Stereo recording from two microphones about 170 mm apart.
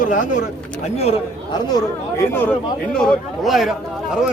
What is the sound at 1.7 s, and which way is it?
Speech, 15° left (ahead or behind).